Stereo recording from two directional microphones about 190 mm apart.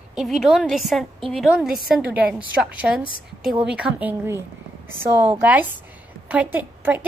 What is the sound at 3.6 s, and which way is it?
A woman's voice, 5° right (ahead or behind).